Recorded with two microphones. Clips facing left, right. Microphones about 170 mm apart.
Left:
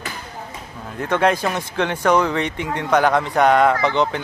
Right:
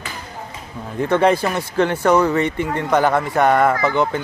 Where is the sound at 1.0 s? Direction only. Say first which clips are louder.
Right 3 dB; 10° right (ahead or behind).